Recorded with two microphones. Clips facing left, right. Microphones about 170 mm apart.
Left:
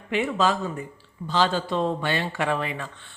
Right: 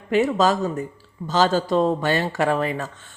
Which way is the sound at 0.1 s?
40° right (ahead or behind).